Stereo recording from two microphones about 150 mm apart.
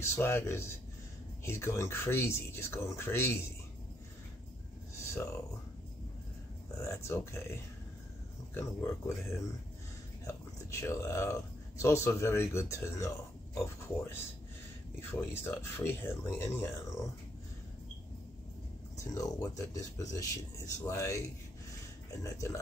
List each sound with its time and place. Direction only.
0.0 s speech: 15° left (ahead or behind)
6.8 s speech: 20° left (ahead or behind)
10.2 s speech: 20° left (ahead or behind)
19.1 s speech: 20° left (ahead or behind)
22.2 s speech: 20° left (ahead or behind)